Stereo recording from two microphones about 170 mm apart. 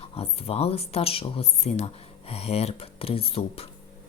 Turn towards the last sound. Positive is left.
turn(degrees=35)  # may be behind; listen again after turning